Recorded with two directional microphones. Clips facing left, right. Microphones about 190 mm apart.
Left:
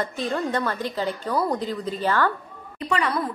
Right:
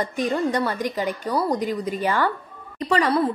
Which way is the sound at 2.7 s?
35° right (ahead or behind).